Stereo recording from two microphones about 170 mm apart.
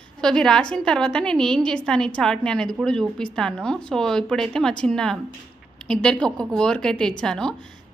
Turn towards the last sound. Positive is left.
turn(degrees=5)  # may be behind; listen again after turning